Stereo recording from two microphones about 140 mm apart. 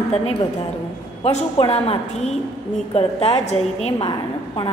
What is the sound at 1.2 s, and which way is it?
A woman's voice, 45° left (ahead or behind).